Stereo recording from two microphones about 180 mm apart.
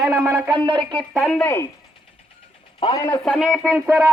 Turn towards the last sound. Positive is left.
turn(degrees=-10)  # may be behind; listen again after turning